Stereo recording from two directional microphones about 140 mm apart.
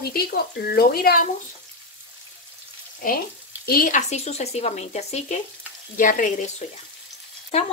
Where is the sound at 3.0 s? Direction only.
80° left.